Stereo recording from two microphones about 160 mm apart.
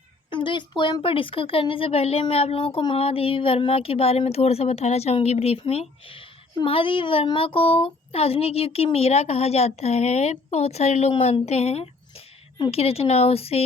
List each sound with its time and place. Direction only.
0.3 s speech: 30° left (ahead or behind)